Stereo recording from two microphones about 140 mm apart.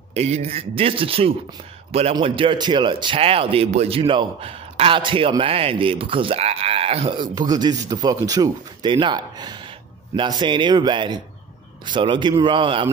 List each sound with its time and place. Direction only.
0.1 s a man's voice: 50° right (ahead or behind)